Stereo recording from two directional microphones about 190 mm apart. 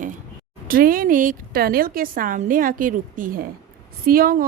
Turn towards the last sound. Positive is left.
turn(degrees=-50)  # may be behind; listen again after turning